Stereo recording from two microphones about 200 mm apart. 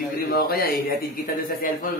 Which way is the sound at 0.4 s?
50° left (ahead or behind).